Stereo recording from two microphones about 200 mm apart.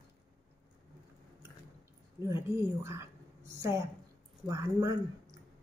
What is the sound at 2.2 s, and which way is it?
A woman's voice, 15° right (ahead or behind).